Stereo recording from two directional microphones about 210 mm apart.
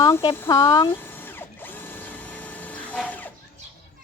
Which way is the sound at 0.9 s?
10° left (ahead or behind).